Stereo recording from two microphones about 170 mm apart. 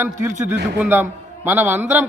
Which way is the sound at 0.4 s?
10° right (ahead or behind).